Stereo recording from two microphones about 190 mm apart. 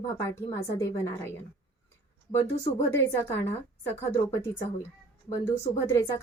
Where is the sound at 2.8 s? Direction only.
15° left (ahead or behind).